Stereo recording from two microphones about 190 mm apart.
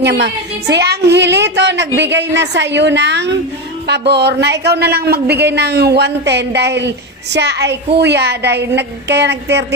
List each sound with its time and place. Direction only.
0.0 s speech: 65° right (ahead or behind)